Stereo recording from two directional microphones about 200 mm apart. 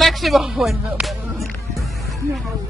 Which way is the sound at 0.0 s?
Centre (ahead or behind).